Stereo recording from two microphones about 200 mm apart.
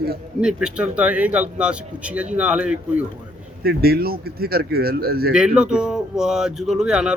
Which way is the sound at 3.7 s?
50° right (ahead or behind).